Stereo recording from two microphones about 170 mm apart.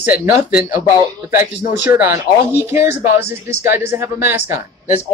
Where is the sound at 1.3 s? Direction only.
60° left (ahead or behind).